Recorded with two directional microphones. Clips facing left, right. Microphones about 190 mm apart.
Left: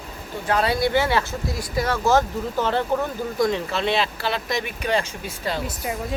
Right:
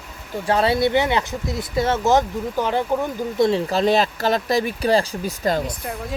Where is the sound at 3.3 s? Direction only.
25° right (ahead or behind).